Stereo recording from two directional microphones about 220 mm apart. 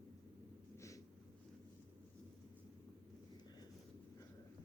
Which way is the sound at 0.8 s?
15° left (ahead or behind).